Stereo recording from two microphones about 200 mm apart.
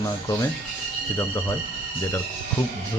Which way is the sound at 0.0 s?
15° left (ahead or behind).